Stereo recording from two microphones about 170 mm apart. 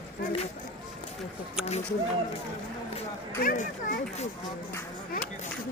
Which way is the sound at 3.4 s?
50° left (ahead or behind).